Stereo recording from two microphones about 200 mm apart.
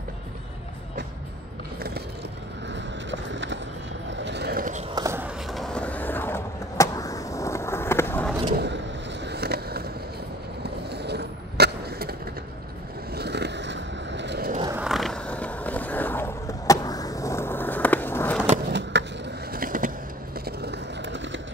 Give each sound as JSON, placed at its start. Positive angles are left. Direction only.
{"t": 2.7, "sound": "vehicle", "side_deg": -65}
{"t": 4.1, "sound": "a sound", "side_deg": -60}
{"t": 4.9, "sound": "walk", "side_deg": -15}
{"t": 5.5, "sound": "vehicle", "side_deg": 5}
{"t": 8.5, "sound": "vehicle", "side_deg": -55}
{"t": 10.6, "sound": "skateboard", "side_deg": -55}
{"t": 14.8, "sound": "skateboard", "side_deg": 0}
{"t": 18.7, "sound": "skateboard", "side_deg": -60}
{"t": 19.5, "sound": "a sound", "side_deg": -45}
{"t": 20.4, "sound": "a sound", "side_deg": -55}